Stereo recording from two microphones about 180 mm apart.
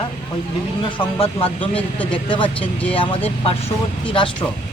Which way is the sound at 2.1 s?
30° left (ahead or behind).